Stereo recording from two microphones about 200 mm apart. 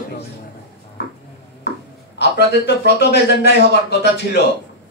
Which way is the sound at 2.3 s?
55° left (ahead or behind).